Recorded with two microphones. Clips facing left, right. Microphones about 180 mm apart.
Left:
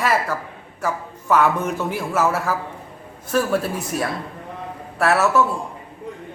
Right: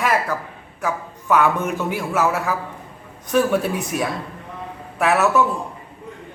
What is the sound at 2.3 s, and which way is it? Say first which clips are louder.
Speech: even; 10° right (ahead or behind).